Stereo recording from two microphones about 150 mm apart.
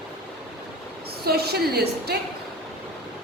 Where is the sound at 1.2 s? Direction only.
90° right.